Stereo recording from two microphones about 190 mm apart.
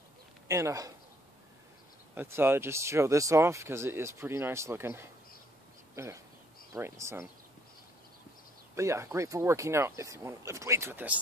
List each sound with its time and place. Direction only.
0.5 s speech: 15° right (ahead or behind)
2.1 s speech: 10° right (ahead or behind)
8.7 s speech: 15° right (ahead or behind)